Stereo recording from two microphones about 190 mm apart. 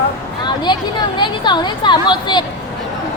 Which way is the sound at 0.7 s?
25° left (ahead or behind).